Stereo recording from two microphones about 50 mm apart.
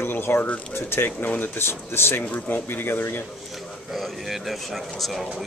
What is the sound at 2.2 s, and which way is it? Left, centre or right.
Speech, left.